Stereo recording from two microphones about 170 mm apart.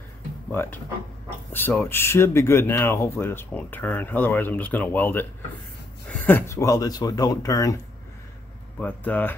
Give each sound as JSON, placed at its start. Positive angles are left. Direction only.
{"t": 0.5, "sound": "speech", "side_deg": 10}